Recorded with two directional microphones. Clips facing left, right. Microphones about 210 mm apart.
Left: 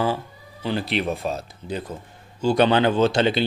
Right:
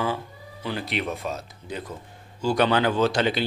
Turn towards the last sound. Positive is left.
turn(degrees=25)  # may be behind; listen again after turning